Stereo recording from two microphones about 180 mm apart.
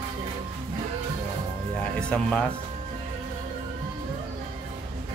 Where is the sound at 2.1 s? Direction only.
5° left (ahead or behind).